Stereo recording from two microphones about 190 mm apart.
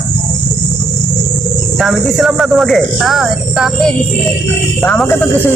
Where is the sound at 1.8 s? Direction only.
Centre (ahead or behind).